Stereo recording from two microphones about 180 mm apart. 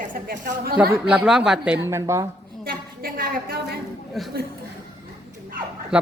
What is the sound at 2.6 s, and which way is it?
A woman's voice, 55° right (ahead or behind).